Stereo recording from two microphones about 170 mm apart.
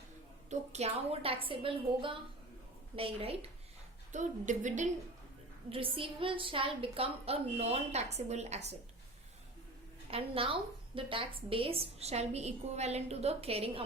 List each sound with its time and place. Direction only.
0.5 s a woman's voice: 40° right (ahead or behind)
4.1 s a woman's voice: 45° right (ahead or behind)
5.6 s a woman's voice: 35° right (ahead or behind)
10.1 s a woman's voice: 35° right (ahead or behind)